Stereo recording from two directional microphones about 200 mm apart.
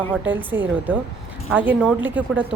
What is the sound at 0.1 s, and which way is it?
A woman's voice, 10° right (ahead or behind).